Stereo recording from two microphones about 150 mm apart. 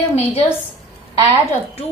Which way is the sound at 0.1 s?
40° left (ahead or behind).